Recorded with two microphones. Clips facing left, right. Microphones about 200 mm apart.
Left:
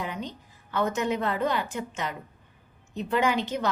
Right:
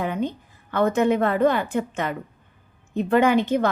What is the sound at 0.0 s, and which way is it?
A woman's voice, 55° right (ahead or behind).